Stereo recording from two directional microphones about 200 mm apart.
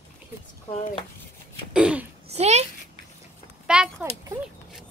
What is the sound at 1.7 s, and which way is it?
Throat clearing, 5° right (ahead or behind).